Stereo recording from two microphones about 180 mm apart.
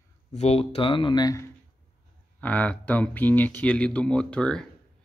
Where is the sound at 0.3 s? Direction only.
35° left (ahead or behind).